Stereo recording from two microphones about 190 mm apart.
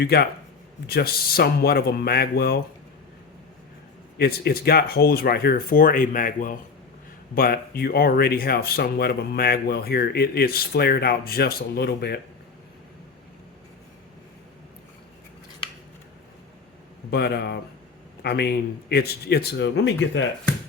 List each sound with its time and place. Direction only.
0.0 s speech: 60° left (ahead or behind)
4.2 s speech: 55° left (ahead or behind)
17.1 s speech: 60° left (ahead or behind)